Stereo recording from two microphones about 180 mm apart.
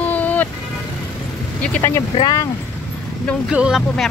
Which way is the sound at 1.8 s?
15° left (ahead or behind).